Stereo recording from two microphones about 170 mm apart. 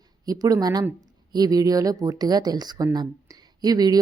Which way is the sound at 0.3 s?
20° right (ahead or behind).